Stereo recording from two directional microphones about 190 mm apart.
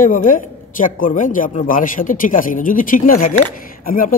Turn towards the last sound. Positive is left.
turn(degrees=50)  # may be behind; listen again after turning